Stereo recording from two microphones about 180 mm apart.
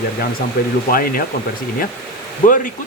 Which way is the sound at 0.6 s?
55° left (ahead or behind).